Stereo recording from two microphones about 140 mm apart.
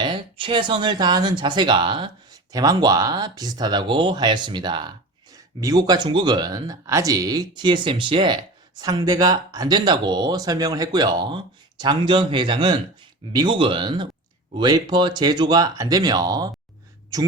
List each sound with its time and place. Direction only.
0.0 s speech: 35° right (ahead or behind)